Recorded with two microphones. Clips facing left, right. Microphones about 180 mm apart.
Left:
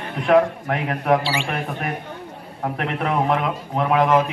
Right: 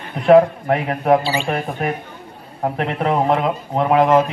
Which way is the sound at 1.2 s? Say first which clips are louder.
Right 3 dB; 75° left (ahead or behind).